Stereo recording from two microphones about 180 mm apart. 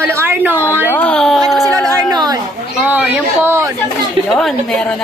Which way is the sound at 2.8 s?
10° right (ahead or behind).